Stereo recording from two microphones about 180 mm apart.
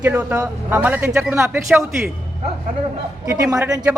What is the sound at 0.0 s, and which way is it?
A man's voice, 10° right (ahead or behind).